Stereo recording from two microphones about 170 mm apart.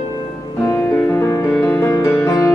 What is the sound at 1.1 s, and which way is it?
Music, 15° left (ahead or behind).